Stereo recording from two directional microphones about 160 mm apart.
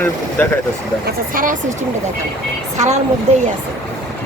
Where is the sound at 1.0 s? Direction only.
60° right (ahead or behind).